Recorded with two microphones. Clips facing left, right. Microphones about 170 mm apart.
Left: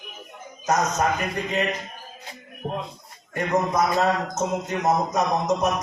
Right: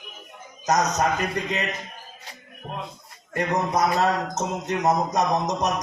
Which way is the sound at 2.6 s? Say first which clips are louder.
Left 6 dB; 30° left (ahead or behind).